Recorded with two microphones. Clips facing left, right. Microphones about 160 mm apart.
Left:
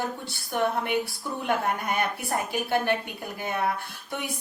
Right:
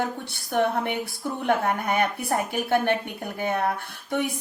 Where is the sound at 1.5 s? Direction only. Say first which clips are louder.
Right 3 dB; 55° right (ahead or behind).